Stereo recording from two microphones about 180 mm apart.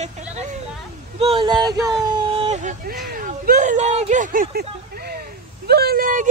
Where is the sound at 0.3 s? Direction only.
40° right (ahead or behind).